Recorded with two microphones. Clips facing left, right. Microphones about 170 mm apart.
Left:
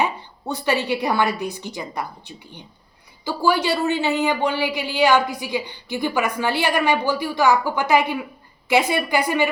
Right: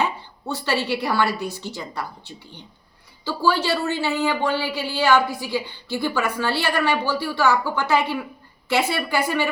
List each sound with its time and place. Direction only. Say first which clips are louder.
0.0 s a woman's voice: left 1 dB; 15° left (ahead or behind)